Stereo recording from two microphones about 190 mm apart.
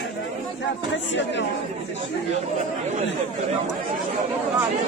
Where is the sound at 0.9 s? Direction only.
70° left (ahead or behind).